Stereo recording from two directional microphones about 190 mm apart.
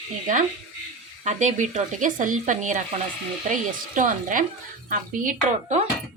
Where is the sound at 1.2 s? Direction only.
35° right (ahead or behind).